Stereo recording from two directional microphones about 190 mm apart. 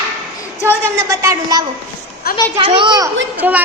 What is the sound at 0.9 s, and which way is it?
A woman's voice, 15° right (ahead or behind).